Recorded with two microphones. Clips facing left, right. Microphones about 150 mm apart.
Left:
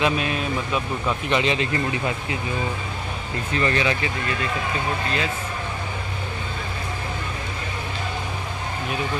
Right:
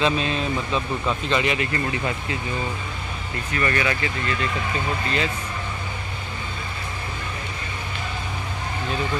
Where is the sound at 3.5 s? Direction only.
20° left (ahead or behind).